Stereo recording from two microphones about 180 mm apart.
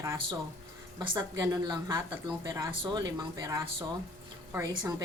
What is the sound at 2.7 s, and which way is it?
A woman's voice, 25° right (ahead or behind).